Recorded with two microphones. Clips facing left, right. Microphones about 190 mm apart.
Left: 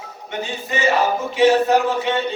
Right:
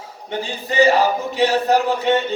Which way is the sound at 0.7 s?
35° right (ahead or behind).